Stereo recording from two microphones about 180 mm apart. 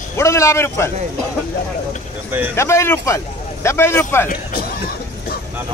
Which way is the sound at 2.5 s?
15° left (ahead or behind).